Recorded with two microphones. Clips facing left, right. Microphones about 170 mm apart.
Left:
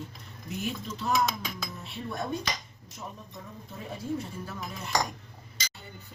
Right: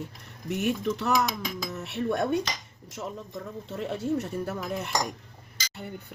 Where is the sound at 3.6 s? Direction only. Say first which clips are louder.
Right 6 dB; 75° right (ahead or behind).